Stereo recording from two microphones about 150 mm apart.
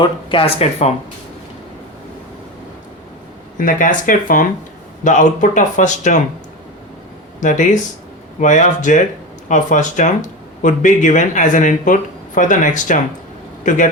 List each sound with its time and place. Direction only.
0.0 s speech: 35° left (ahead or behind)
3.6 s speech: 60° left (ahead or behind)
7.3 s speech: 55° left (ahead or behind)